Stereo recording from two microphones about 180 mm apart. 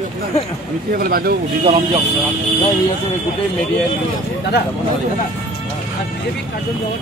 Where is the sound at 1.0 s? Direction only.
55° right (ahead or behind).